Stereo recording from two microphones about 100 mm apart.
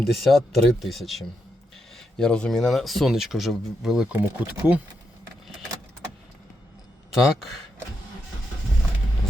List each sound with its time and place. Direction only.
0.0 s speech: centre (ahead or behind)
4.1 s speech: 15° right (ahead or behind)
7.1 s speech: 5° right (ahead or behind)